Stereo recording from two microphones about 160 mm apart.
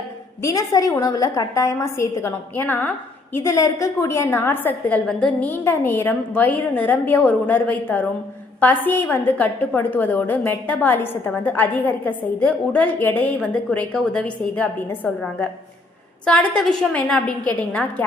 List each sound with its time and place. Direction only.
0.4 s a woman's voice: 20° left (ahead or behind)